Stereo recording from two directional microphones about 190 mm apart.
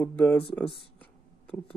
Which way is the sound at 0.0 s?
10° left (ahead or behind).